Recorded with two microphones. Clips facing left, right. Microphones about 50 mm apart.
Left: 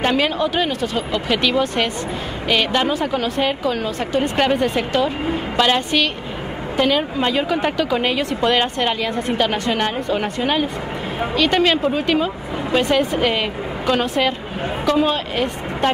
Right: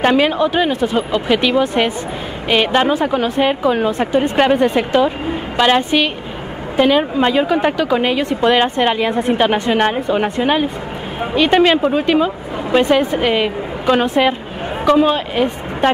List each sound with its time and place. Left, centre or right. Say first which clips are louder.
0.0 s speech: right 5 dB; centre
4.2 s speech: right 4 dB; centre